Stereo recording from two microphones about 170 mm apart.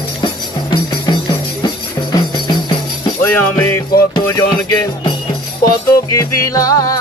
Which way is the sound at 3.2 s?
10° left (ahead or behind).